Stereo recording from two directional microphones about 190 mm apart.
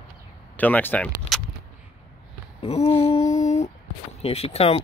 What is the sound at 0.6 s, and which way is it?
Speech, 10° left (ahead or behind).